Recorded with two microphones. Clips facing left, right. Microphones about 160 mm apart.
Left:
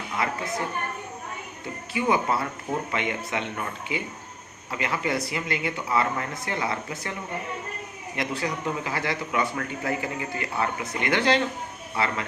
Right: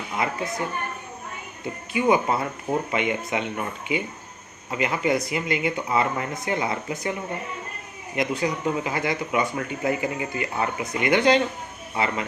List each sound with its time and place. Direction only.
1.9 s speech: 20° right (ahead or behind)
8.1 s speech: 20° right (ahead or behind)